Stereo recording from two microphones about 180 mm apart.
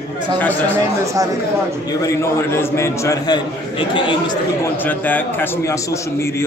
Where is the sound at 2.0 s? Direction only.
15° left (ahead or behind).